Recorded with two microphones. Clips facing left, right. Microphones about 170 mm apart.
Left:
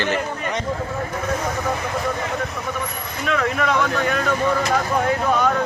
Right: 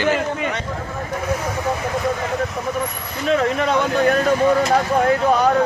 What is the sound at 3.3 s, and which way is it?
Speech, 30° right (ahead or behind).